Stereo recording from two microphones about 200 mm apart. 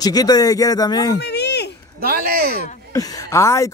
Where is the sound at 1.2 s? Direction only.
55° left (ahead or behind).